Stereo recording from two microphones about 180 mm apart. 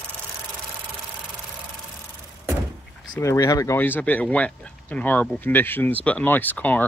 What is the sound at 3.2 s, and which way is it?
Speech, 15° left (ahead or behind).